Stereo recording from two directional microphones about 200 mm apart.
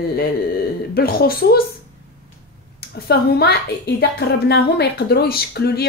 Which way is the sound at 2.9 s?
50° left (ahead or behind).